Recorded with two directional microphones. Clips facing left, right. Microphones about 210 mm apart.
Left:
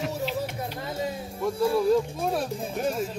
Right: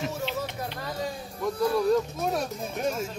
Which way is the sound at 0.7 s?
25° left (ahead or behind).